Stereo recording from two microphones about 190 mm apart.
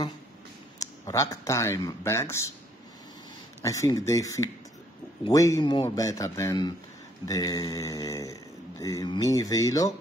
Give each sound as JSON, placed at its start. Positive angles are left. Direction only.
{"t": 0.7, "sound": "speech", "side_deg": 15}
{"t": 3.6, "sound": "speech", "side_deg": 15}